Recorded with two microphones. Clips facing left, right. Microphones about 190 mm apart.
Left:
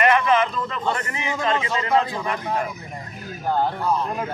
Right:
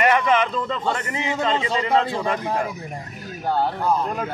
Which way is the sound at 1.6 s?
30° right (ahead or behind).